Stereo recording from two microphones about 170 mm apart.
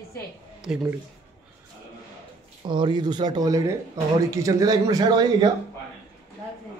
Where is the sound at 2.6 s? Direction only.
25° right (ahead or behind).